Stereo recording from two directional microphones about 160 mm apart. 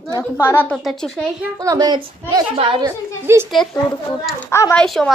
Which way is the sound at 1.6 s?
20° right (ahead or behind).